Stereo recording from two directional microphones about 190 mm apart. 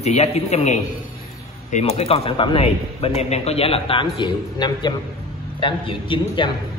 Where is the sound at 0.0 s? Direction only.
35° left (ahead or behind).